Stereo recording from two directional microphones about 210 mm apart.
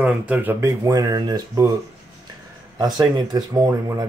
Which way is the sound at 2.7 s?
20° right (ahead or behind).